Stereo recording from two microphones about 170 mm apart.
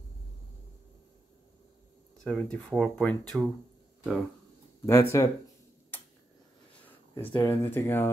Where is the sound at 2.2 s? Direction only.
5° left (ahead or behind).